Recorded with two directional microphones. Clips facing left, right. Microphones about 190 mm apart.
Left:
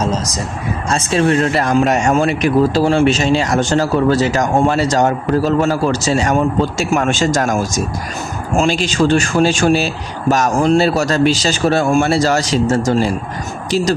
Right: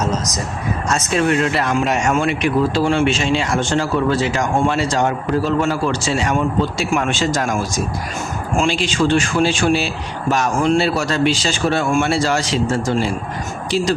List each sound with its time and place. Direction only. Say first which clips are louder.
0.9 s speech: left 3 dB; 30° left (ahead or behind)